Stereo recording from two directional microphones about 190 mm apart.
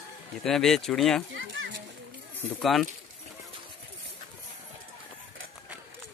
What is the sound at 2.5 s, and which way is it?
Speech, centre (ahead or behind).